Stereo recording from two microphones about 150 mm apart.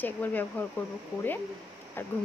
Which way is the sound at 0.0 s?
10° left (ahead or behind).